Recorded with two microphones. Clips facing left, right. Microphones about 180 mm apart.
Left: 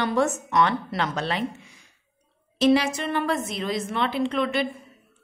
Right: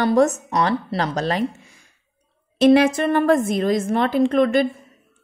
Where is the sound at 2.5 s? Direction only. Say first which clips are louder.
Right 6 dB; 55° right (ahead or behind).